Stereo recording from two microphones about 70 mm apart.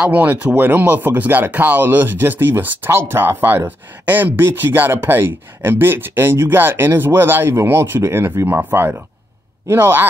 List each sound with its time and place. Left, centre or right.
0.0 s speech: right